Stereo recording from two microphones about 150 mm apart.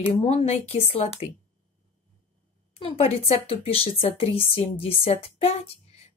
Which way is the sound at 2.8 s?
40° left (ahead or behind).